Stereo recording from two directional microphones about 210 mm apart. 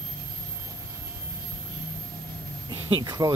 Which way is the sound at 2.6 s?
20° right (ahead or behind).